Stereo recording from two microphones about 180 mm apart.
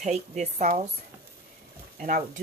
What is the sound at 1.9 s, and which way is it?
Speech, 45° right (ahead or behind).